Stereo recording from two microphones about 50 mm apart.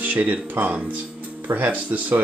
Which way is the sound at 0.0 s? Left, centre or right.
Right.